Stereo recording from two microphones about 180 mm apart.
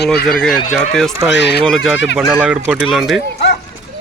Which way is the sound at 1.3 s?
70° left (ahead or behind).